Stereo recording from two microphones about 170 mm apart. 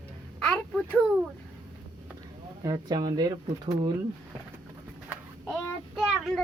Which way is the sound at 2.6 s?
20° right (ahead or behind).